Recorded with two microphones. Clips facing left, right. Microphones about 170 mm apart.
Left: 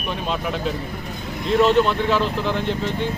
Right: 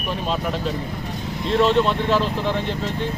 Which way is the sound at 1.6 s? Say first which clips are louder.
Left 1 dB; centre (ahead or behind).